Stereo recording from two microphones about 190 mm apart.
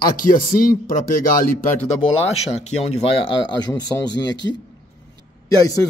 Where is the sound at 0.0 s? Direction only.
50° left (ahead or behind).